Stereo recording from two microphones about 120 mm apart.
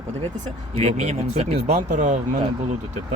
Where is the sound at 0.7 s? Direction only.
65° right (ahead or behind); by 2.3 s 90° right.